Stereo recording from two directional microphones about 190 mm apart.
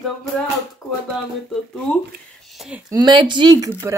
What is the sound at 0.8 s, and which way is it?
Speech, 20° left (ahead or behind).